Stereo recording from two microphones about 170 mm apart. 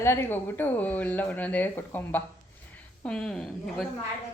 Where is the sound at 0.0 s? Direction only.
15° left (ahead or behind).